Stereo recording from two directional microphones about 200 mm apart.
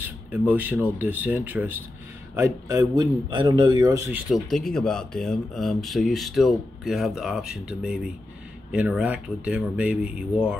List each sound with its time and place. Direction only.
0.0 s speech: 10° right (ahead or behind)
4.3 s speech: centre (ahead or behind)